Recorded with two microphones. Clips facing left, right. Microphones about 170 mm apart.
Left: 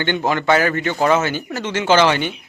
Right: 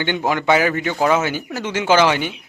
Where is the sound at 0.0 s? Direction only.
10° right (ahead or behind).